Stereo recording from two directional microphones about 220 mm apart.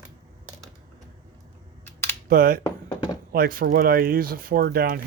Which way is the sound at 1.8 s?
10° left (ahead or behind).